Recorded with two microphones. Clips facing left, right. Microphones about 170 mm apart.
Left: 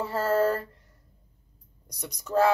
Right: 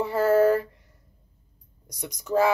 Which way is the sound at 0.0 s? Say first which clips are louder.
Right 5 dB; 15° right (ahead or behind).